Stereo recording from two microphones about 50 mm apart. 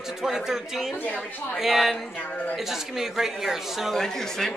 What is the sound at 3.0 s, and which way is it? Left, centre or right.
Speech, centre.